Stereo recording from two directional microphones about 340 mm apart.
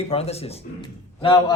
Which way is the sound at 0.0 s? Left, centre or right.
Centre.